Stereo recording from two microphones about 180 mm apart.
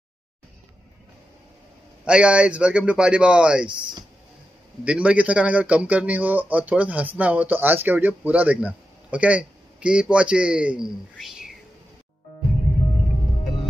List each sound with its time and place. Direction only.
2.0 s speech: 5° right (ahead or behind)
4.8 s a man's voice: 5° right (ahead or behind)